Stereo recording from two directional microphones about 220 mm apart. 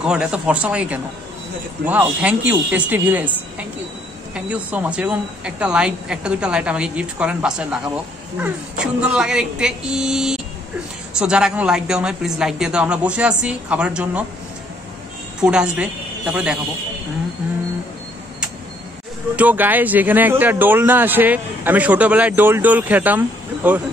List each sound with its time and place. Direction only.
0.0 s a woman's voice: 5° right (ahead or behind)
15.4 s a woman's voice: 5° right (ahead or behind)
19.3 s speech: 5° right (ahead or behind)